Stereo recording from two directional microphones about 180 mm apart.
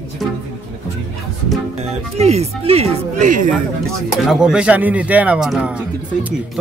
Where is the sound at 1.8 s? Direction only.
35° right (ahead or behind).